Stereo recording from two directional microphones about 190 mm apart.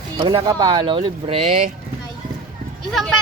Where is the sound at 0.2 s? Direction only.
25° right (ahead or behind).